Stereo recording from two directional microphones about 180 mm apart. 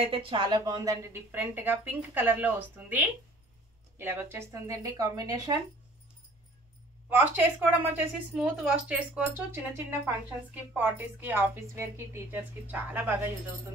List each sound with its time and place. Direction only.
0.0 s a woman's voice: 30° right (ahead or behind)
7.1 s a woman's voice: 10° right (ahead or behind)